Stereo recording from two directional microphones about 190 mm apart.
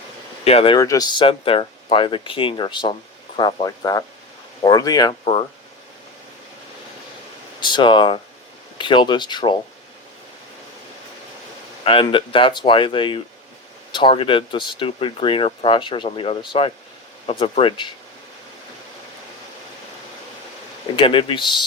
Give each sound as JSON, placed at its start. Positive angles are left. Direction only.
{"t": 0.4, "sound": "speech", "side_deg": 30}
{"t": 0.8, "sound": "speech", "side_deg": 20}
{"t": 7.6, "sound": "speech", "side_deg": 25}
{"t": 11.9, "sound": "speech", "side_deg": 30}
{"t": 20.9, "sound": "speech", "side_deg": 25}